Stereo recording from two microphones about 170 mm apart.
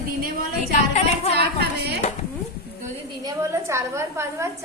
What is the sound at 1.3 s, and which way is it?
Speech, 75° right (ahead or behind).